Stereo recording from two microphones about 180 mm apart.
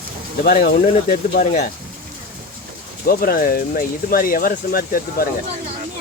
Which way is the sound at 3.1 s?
55° left (ahead or behind).